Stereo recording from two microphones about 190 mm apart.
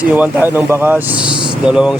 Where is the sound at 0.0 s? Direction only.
5° right (ahead or behind).